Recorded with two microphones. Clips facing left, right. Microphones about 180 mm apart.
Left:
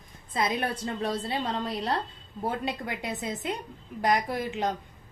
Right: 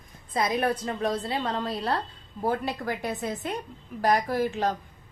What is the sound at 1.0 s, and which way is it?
Speech, 30° left (ahead or behind).